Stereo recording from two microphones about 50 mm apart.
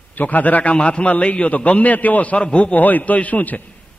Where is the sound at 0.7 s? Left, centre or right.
Left.